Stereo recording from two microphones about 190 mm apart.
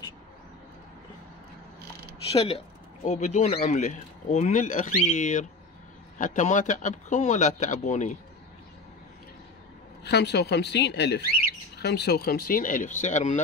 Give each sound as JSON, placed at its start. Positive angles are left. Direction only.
{"t": 2.3, "sound": "speech", "side_deg": 30}
{"t": 10.0, "sound": "speech", "side_deg": 60}